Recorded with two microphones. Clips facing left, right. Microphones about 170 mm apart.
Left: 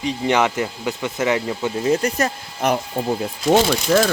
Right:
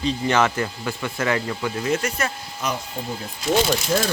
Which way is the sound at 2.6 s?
60° left (ahead or behind).